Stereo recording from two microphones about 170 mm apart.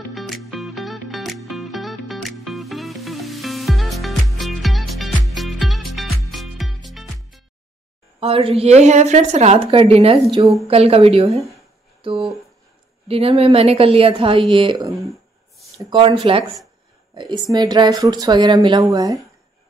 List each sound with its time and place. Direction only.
0.1 s music: centre (ahead or behind)
8.2 s a woman's voice: 35° right (ahead or behind)